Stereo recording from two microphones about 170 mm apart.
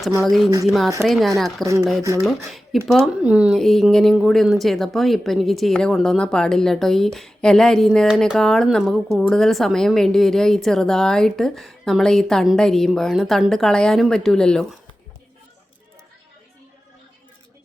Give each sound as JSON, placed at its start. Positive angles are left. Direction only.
{"t": 0.3, "sound": "a woman's voice", "side_deg": 0}
{"t": 1.6, "sound": "speech", "side_deg": -15}
{"t": 2.2, "sound": "a woman's voice", "side_deg": 0}